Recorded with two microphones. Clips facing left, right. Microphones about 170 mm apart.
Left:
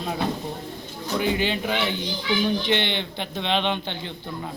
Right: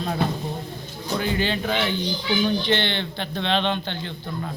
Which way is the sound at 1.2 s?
15° left (ahead or behind).